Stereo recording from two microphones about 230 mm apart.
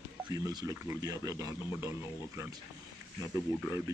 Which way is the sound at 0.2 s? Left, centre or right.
Centre.